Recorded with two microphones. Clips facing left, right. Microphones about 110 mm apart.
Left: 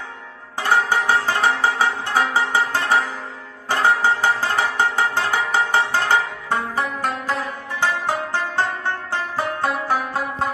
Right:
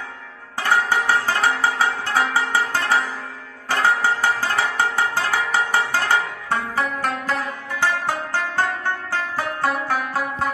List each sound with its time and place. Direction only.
0.6 s music: 15° left (ahead or behind)